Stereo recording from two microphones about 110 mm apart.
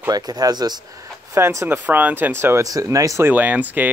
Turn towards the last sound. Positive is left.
turn(degrees=-15)  # may be behind; listen again after turning